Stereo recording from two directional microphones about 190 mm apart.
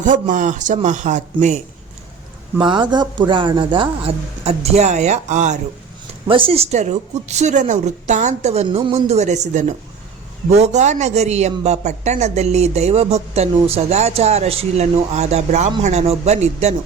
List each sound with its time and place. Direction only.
0.0 s speech: 40° right (ahead or behind)
2.6 s speech: 25° right (ahead or behind)
6.2 s speech: 25° right (ahead or behind)